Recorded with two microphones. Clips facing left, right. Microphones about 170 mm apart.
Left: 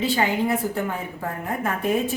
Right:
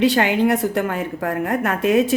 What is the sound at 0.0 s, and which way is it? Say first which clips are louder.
A woman's voice: right 6 dB; 75° right (ahead or behind).